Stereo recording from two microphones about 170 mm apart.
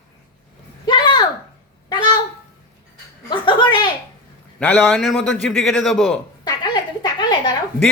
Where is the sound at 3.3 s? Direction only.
25° left (ahead or behind).